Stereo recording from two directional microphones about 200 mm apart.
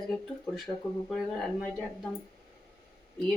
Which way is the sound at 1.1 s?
Centre (ahead or behind).